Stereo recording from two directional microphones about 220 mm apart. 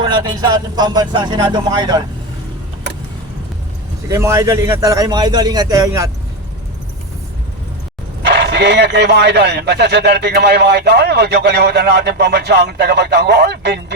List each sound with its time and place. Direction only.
0.0 s speech: 20° right (ahead or behind)
4.1 s a man's voice: 15° right (ahead or behind)
8.2 s speech: 50° right (ahead or behind)